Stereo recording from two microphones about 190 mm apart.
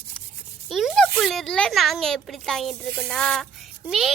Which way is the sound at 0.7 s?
Centre (ahead or behind).